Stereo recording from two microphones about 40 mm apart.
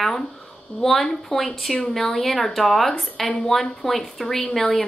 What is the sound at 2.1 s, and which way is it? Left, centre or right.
Speech, left.